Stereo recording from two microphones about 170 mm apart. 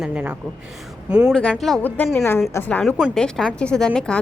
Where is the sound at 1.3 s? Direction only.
5° left (ahead or behind).